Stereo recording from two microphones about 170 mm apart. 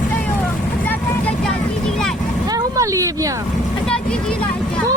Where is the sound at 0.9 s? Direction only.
5° left (ahead or behind).